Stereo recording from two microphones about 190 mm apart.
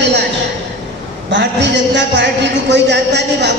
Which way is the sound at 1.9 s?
70° right (ahead or behind).